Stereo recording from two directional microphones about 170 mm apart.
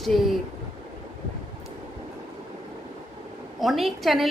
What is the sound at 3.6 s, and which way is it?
Speech, centre (ahead or behind).